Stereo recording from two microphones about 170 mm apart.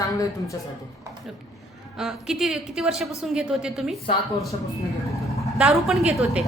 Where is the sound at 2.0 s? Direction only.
5° right (ahead or behind).